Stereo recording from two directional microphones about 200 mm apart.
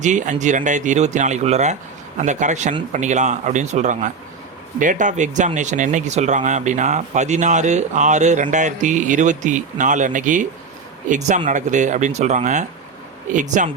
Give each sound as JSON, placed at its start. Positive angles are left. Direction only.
{"t": 0.0, "sound": "speech", "side_deg": -40}